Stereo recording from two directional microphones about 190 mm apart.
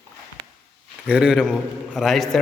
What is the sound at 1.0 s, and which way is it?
Speech, 5° right (ahead or behind).